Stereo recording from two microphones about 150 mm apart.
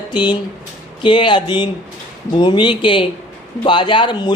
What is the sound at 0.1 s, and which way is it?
Speech, 30° left (ahead or behind).